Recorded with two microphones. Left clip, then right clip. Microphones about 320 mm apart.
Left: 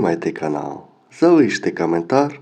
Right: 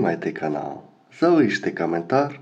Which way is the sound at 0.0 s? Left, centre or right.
Centre.